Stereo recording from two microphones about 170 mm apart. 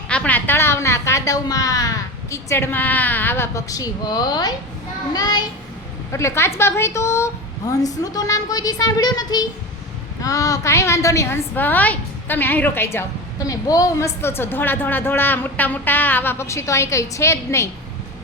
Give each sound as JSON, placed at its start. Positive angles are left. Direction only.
{"t": 0.1, "sound": "a woman's voice", "side_deg": 10}